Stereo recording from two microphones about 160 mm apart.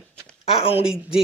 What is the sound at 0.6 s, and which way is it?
Speech, 40° left (ahead or behind).